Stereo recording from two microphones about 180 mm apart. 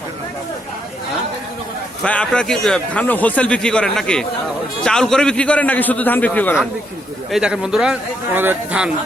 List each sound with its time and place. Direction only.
2.0 s a man's voice: 5° left (ahead or behind)
7.3 s a man's voice: 5° right (ahead or behind)